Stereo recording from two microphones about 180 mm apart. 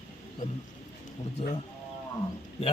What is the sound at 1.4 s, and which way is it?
Speech, 40° left (ahead or behind).